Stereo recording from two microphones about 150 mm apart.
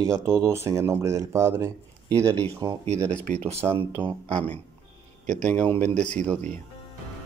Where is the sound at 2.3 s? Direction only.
10° left (ahead or behind).